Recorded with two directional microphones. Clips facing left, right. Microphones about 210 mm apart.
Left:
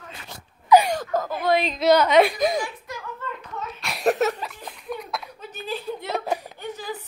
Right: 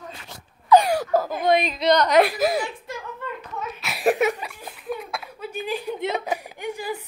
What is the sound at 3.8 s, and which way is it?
Chuckle, 5° right (ahead or behind).